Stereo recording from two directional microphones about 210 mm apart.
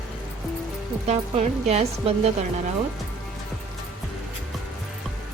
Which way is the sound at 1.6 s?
30° right (ahead or behind).